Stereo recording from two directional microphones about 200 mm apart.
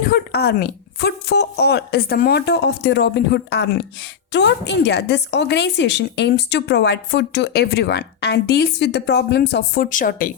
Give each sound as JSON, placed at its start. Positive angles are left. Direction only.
{"t": 0.0, "sound": "a woman's voice", "side_deg": 50}